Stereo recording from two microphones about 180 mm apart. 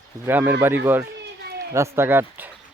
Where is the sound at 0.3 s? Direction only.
10° right (ahead or behind).